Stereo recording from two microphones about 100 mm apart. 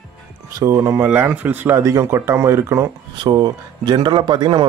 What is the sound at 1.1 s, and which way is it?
Speech, 15° right (ahead or behind).